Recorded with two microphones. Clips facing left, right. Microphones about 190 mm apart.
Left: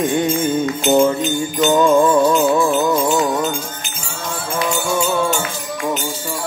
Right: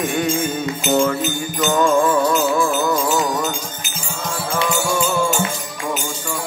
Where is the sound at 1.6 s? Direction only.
25° left (ahead or behind).